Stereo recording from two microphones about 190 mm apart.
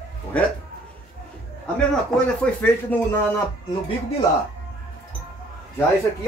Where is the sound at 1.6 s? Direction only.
5° left (ahead or behind).